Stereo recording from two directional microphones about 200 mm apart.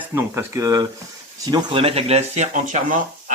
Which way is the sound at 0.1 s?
10° right (ahead or behind).